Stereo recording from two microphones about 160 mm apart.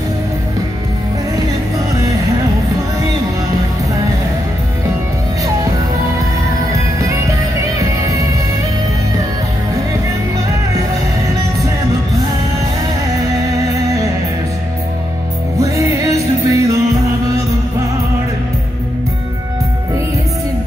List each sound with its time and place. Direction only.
15.5 s music: 20° right (ahead or behind)